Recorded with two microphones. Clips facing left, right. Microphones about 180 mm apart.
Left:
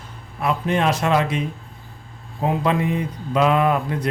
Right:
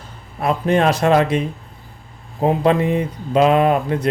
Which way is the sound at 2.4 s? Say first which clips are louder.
Right 5 dB; 30° right (ahead or behind).